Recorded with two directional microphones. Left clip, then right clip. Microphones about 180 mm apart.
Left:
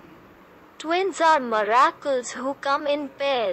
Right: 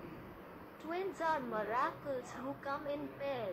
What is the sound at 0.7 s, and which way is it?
Speech, 50° left (ahead or behind).